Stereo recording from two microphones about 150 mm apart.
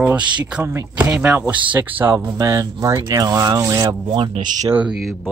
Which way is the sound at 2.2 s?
25° right (ahead or behind).